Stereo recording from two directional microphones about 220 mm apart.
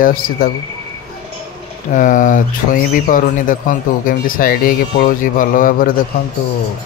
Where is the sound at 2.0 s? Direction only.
35° left (ahead or behind).